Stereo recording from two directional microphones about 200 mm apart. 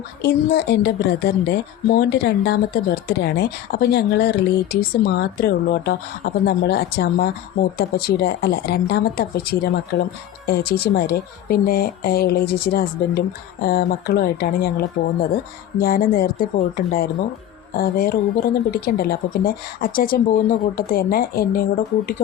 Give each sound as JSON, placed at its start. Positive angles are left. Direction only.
{"t": 0.2, "sound": "a woman's voice", "side_deg": 55}